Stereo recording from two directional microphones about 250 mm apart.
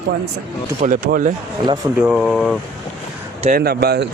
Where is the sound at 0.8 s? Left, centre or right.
Right.